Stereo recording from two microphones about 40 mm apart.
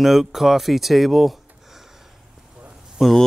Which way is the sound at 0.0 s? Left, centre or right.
Centre.